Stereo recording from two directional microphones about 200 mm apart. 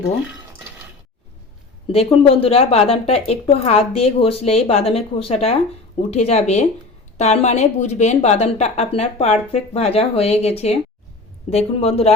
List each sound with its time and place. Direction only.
2.2 s a woman's voice: 30° left (ahead or behind)